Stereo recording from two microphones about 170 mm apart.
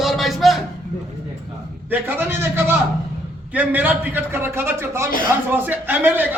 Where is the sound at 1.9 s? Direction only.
10° right (ahead or behind).